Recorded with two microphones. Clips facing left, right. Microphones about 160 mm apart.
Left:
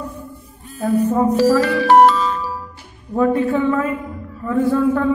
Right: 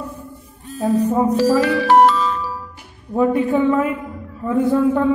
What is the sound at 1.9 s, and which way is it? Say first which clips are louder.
Music: left 2 dB; 45° left (ahead or behind).